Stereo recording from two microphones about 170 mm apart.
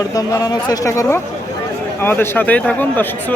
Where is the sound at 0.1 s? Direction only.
20° left (ahead or behind).